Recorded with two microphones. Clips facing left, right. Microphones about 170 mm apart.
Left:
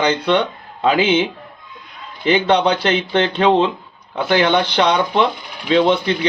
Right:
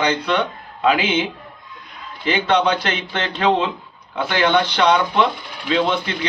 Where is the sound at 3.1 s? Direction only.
25° left (ahead or behind).